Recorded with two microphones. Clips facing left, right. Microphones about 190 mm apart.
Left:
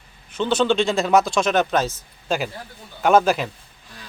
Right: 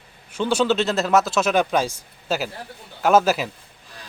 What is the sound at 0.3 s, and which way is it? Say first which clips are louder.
Speech: left 1 dB; 10° right (ahead or behind).